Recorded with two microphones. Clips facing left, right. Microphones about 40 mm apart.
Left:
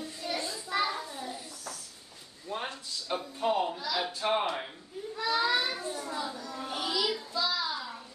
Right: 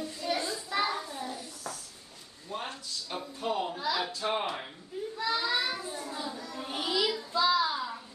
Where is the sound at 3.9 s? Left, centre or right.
Right.